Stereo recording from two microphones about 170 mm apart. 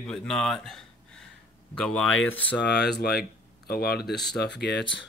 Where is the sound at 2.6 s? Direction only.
75° left (ahead or behind).